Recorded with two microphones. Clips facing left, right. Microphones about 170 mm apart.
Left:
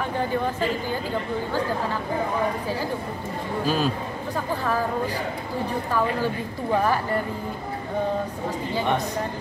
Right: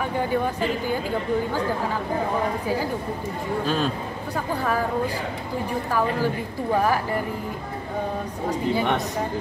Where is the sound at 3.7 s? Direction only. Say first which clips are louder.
Left 2 dB; 5° left (ahead or behind).